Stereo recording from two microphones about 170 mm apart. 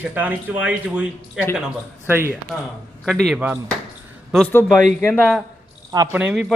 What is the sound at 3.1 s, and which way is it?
A man's voice, centre (ahead or behind).